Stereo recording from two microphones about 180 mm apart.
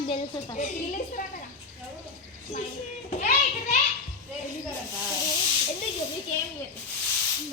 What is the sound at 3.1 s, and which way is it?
Children playing, 45° left (ahead or behind).